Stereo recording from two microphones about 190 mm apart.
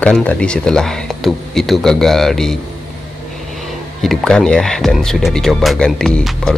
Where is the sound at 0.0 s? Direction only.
10° left (ahead or behind).